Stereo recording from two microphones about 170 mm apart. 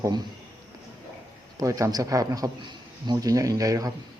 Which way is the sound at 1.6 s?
20° right (ahead or behind).